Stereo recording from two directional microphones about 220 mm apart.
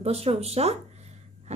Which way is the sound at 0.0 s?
25° right (ahead or behind).